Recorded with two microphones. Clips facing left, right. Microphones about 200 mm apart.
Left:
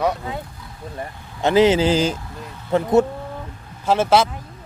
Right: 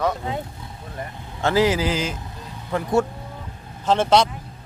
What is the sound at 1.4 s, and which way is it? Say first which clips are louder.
Speech: left 4 dB; 20° left (ahead or behind).